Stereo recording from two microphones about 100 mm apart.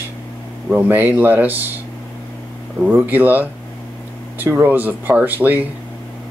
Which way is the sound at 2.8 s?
20° right (ahead or behind).